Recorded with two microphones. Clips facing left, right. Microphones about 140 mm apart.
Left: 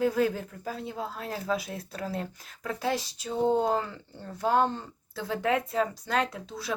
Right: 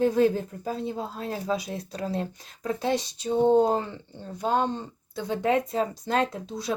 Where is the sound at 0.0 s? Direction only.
25° right (ahead or behind).